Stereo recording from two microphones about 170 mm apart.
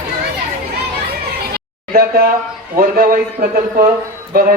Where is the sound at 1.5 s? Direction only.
60° right (ahead or behind).